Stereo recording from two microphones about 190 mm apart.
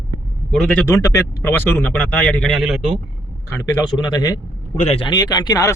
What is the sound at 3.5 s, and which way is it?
A man's voice, 15° left (ahead or behind).